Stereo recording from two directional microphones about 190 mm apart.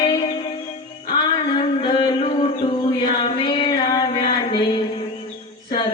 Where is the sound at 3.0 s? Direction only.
25° left (ahead or behind).